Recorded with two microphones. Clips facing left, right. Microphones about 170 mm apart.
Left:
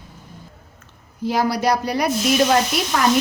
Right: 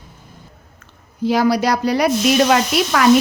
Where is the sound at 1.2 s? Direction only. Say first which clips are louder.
Right 4 dB; 90° right.